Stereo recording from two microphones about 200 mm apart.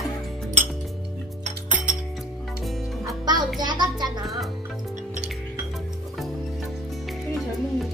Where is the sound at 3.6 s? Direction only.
20° right (ahead or behind).